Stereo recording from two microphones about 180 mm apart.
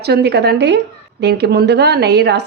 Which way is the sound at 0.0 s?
65° right (ahead or behind).